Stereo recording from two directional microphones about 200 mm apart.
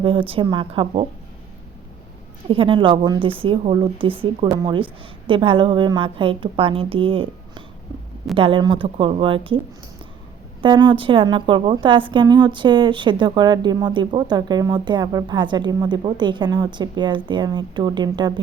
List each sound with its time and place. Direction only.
0.0 s a woman's voice: 25° right (ahead or behind)
2.5 s a woman's voice: 25° right (ahead or behind)
10.6 s a woman's voice: 25° right (ahead or behind)